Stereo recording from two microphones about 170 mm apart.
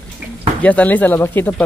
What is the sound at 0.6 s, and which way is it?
Speech, 10° left (ahead or behind).